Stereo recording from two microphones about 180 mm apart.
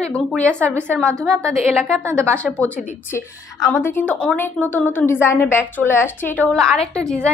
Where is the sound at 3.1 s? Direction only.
15° left (ahead or behind).